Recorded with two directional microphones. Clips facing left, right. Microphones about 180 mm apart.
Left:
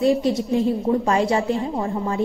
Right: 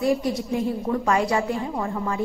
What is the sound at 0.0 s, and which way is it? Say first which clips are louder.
A woman's voice: left 4 dB; 25° left (ahead or behind).